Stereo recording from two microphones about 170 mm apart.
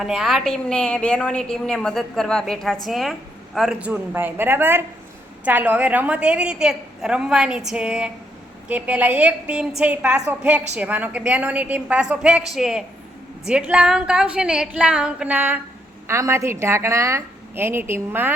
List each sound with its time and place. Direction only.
0.0 s a woman's voice: centre (ahead or behind)